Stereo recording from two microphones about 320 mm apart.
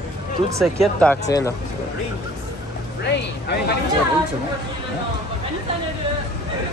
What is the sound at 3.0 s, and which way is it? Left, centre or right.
Speech, left.